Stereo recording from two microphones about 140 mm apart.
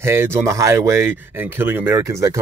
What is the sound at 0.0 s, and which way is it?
Speech, 20° right (ahead or behind).